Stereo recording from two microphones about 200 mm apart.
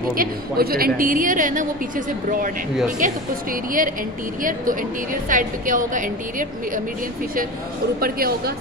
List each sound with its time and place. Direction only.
0.1 s a woman's voice: 45° right (ahead or behind)
4.4 s a woman's voice: 45° right (ahead or behind)
8.0 s a woman's voice: 50° right (ahead or behind)